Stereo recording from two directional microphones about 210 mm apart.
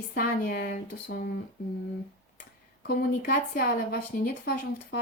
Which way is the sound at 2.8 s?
45° left (ahead or behind).